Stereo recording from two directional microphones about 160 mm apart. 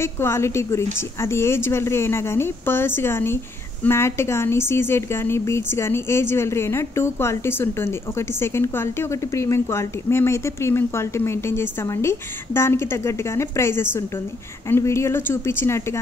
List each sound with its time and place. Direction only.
0.0 s a woman's voice: 15° left (ahead or behind)